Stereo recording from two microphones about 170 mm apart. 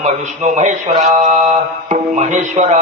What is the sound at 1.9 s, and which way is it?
Music, 45° right (ahead or behind).